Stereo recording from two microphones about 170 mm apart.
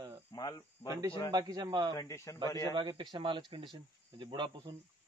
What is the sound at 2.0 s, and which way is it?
Speech, 20° left (ahead or behind).